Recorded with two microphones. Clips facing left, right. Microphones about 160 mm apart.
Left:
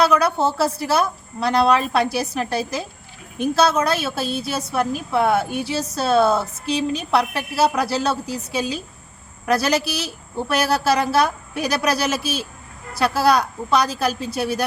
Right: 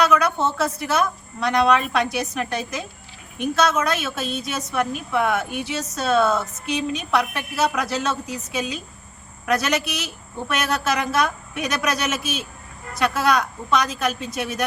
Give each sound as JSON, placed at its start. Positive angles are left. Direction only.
{"t": 0.0, "sound": "a woman's voice", "side_deg": 35}